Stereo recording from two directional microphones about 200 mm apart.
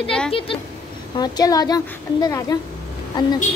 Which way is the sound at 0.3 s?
25° left (ahead or behind).